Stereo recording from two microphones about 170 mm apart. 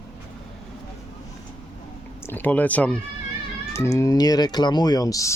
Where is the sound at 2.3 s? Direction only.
10° left (ahead or behind).